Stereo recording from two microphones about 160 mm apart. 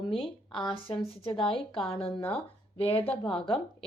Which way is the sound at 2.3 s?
35° left (ahead or behind).